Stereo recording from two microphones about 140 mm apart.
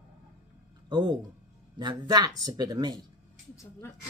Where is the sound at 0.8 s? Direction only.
30° right (ahead or behind).